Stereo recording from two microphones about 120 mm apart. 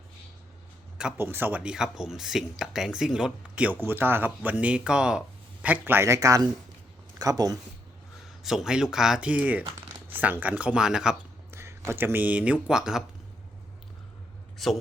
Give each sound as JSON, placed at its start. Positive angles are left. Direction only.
{"t": 0.9, "sound": "speech", "side_deg": -10}
{"t": 8.4, "sound": "speech", "side_deg": -5}
{"t": 11.5, "sound": "speech", "side_deg": -20}
{"t": 14.6, "sound": "speech", "side_deg": 0}